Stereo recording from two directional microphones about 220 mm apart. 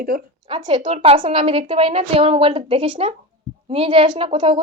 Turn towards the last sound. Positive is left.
turn(degrees=-25)  # may be behind; listen again after turning